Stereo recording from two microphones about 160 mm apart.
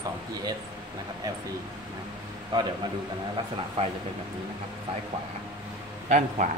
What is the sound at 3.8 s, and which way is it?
Speech, 35° right (ahead or behind).